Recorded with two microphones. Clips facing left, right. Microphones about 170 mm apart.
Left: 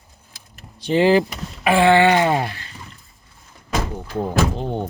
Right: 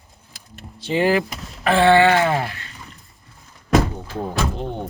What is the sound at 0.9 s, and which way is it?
Speech, 25° left (ahead or behind).